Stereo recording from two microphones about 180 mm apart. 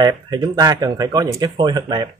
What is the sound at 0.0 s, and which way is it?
Speech, 20° right (ahead or behind).